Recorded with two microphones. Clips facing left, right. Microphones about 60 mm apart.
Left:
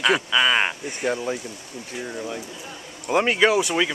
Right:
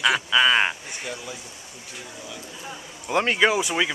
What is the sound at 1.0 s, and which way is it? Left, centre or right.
Speech, left.